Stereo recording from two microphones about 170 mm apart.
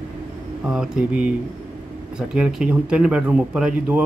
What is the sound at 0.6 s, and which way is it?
Speech, 5° right (ahead or behind).